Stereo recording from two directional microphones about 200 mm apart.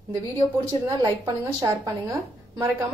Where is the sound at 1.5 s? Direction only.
15° right (ahead or behind).